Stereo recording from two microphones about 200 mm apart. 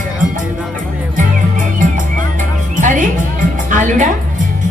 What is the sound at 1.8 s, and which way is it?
Music, 40° right (ahead or behind).